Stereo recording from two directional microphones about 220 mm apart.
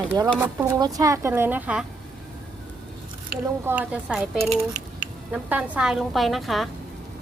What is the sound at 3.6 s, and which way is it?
A woman's voice, 5° right (ahead or behind).